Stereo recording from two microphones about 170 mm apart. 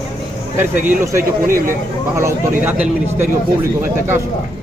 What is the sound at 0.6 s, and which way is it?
Speech, 15° right (ahead or behind).